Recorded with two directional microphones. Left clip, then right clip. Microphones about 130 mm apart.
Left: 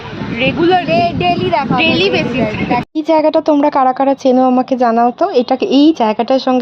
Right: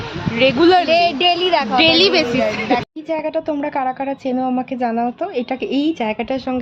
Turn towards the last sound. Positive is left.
turn(degrees=50)  # may be behind; listen again after turning